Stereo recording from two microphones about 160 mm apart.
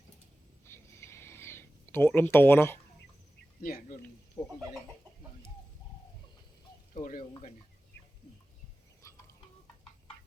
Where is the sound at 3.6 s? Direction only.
60° left (ahead or behind).